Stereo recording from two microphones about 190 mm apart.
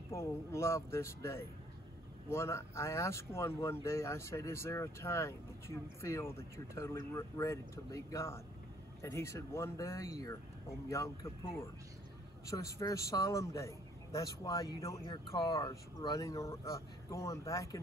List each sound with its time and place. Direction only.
0.1 s a man's voice: 15° left (ahead or behind)